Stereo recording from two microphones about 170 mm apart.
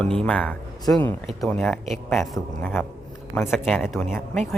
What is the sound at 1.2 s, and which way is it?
Speech, centre (ahead or behind).